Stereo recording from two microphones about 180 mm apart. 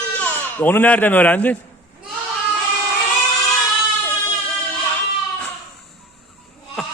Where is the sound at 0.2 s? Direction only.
10° left (ahead or behind).